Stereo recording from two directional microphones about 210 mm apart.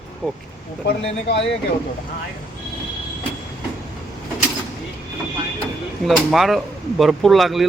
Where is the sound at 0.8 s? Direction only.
50° left (ahead or behind).